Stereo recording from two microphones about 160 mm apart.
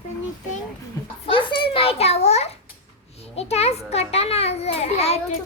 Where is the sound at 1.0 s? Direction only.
20° left (ahead or behind).